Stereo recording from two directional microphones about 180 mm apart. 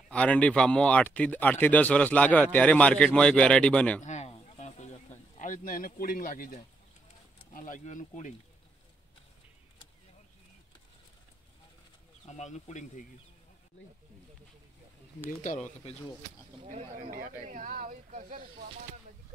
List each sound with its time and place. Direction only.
0.1 s speech: 5° left (ahead or behind)
4.0 s a sound: 40° left (ahead or behind)
7.5 s speech: 45° left (ahead or behind)
12.3 s speech: 40° left (ahead or behind)
16.6 s speech: 45° right (ahead or behind)